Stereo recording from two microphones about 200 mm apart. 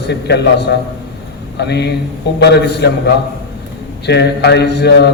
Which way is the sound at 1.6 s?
55° left (ahead or behind).